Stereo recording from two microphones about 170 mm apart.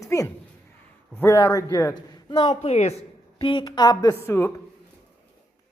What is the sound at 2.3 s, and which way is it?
Speech, 35° left (ahead or behind).